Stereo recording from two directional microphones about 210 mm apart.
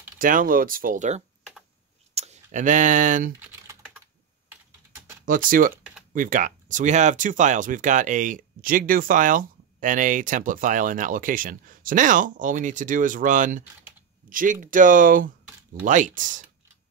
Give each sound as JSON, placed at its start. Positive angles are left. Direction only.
{"t": 0.2, "sound": "speech", "side_deg": -40}
{"t": 3.3, "sound": "typing", "side_deg": -5}
{"t": 4.5, "sound": "computer keyboard", "side_deg": -10}
{"t": 5.2, "sound": "speech", "side_deg": -40}